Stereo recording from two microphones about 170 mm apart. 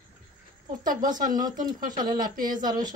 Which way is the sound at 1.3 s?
25° right (ahead or behind).